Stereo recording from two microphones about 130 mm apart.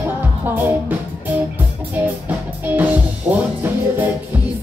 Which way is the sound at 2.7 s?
15° right (ahead or behind).